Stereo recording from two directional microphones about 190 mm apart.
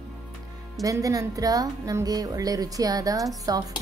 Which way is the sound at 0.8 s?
20° right (ahead or behind).